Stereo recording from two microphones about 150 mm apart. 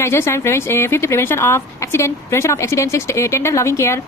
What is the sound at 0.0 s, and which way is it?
A woman's voice, 20° left (ahead or behind).